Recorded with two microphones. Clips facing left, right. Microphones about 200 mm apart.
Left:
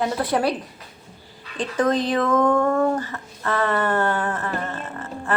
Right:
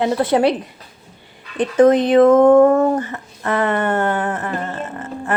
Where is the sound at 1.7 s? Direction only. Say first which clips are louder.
Right 9 dB; 20° right (ahead or behind).